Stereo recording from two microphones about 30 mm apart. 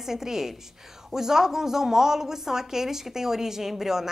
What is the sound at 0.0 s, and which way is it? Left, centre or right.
A woman's voice, centre.